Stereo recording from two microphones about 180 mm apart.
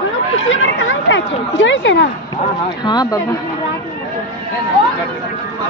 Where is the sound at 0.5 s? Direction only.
90° left.